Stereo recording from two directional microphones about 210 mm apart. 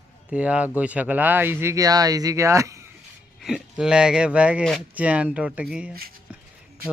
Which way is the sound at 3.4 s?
5° right (ahead or behind).